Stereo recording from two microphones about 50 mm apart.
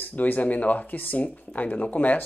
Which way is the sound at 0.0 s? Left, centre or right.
Left.